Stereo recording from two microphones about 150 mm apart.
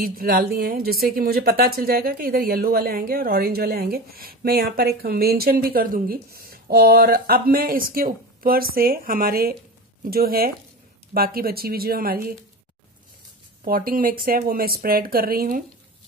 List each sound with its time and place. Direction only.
0.0 s speech: 80° right
13.7 s speech: 75° right (ahead or behind)